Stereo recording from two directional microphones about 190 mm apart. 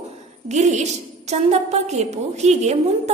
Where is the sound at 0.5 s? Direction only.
40° right (ahead or behind).